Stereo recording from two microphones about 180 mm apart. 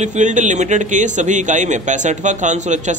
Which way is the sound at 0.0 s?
40° right (ahead or behind).